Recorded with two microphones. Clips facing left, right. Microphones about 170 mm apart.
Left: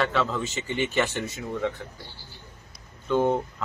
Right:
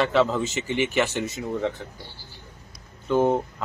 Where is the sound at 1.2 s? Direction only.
25° right (ahead or behind).